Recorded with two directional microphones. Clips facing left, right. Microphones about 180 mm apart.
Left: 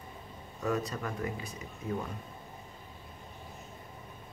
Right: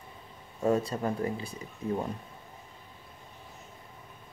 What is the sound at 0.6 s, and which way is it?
Speech, 30° right (ahead or behind).